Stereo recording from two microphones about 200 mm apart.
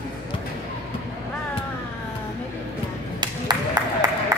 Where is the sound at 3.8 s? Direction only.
20° right (ahead or behind).